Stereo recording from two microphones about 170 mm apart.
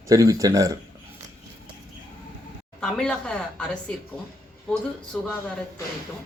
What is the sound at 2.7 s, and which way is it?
A woman's voice, 5° left (ahead or behind).